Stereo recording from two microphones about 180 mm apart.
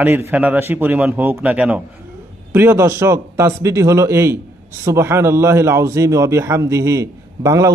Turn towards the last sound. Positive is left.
turn(degrees=-20)  # may be behind; listen again after turning